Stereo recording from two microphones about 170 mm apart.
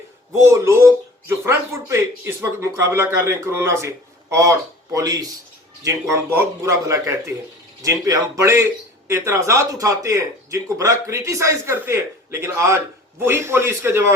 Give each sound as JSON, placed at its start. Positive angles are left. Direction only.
{"t": 0.3, "sound": "a man's voice", "side_deg": -15}